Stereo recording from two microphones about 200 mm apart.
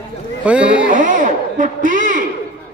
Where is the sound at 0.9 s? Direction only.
40° right (ahead or behind).